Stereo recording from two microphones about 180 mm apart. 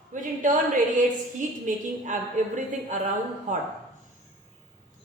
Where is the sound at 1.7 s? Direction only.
45° right (ahead or behind).